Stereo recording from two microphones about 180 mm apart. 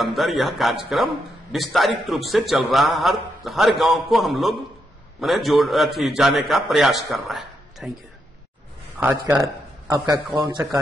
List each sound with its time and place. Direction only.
0.0 s a man's voice: centre (ahead or behind)
9.0 s speech: 15° right (ahead or behind)